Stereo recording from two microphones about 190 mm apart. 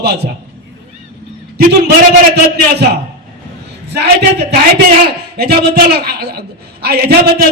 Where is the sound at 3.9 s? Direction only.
60° right (ahead or behind).